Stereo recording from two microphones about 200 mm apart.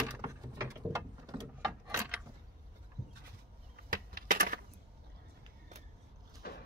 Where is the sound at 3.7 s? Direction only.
45° right (ahead or behind).